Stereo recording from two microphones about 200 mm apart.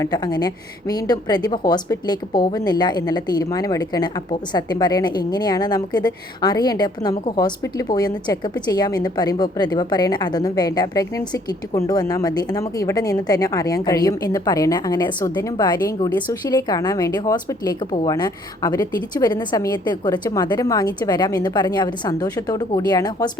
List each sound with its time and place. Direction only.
0.0 s a woman's voice: 20° left (ahead or behind)